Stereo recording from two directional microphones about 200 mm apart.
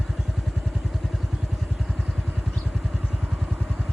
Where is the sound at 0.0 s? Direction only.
Centre (ahead or behind).